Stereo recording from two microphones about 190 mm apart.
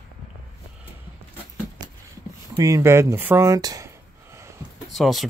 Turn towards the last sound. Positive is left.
turn(degrees=0)  # may be behind; listen again after turning